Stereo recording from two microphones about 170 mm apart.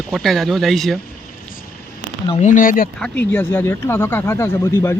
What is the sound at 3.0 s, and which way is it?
Speech, 10° left (ahead or behind).